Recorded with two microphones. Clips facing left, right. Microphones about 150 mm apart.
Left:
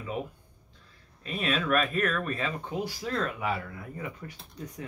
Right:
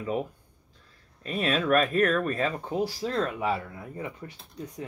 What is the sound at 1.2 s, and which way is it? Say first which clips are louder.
Speech: right 3 dB; 40° right (ahead or behind).